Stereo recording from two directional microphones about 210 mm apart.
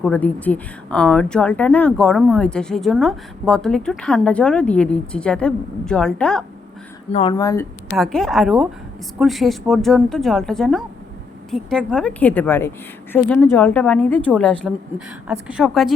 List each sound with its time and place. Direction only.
0.0 s speech: 5° left (ahead or behind)
7.1 s speech: 30° left (ahead or behind)
7.3 s a woman's voice: 15° left (ahead or behind)
7.9 s a woman's voice: centre (ahead or behind)